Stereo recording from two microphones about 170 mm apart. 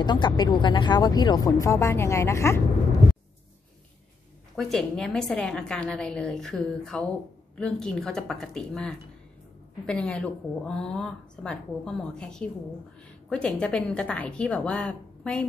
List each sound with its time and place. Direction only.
0.0 s speech: 25° left (ahead or behind)
4.6 s a woman's voice: centre (ahead or behind)